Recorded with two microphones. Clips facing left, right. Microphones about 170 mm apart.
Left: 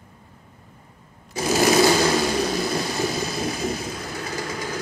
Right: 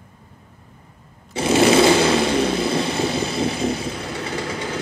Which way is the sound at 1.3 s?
25° right (ahead or behind).